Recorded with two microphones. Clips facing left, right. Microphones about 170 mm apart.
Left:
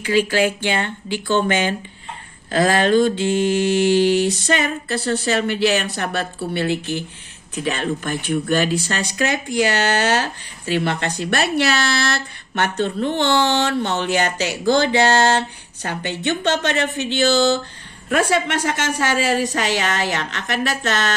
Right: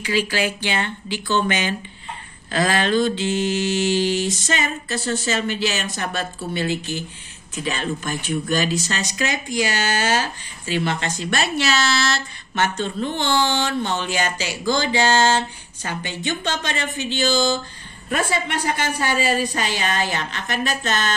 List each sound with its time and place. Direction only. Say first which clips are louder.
0.0 s speech: left 5 dB; 50° left (ahead or behind); by 21.1 s 75° left (ahead or behind)